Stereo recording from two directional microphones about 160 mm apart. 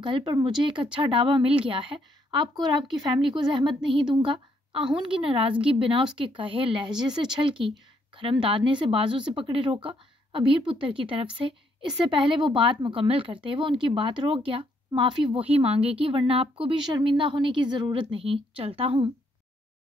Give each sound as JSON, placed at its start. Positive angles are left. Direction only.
{"t": 0.0, "sound": "a woman's voice", "side_deg": -30}